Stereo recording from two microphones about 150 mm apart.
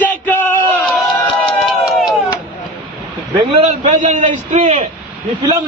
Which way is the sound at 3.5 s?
45° right (ahead or behind).